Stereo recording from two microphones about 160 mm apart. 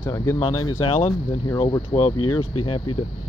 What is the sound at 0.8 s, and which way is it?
Speech, 40° left (ahead or behind).